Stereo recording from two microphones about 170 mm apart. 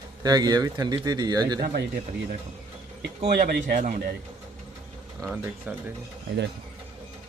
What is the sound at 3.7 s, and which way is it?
Speech, 45° right (ahead or behind).